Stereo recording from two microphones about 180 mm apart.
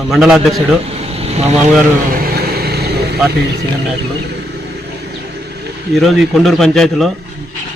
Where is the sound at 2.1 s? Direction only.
60° right (ahead or behind).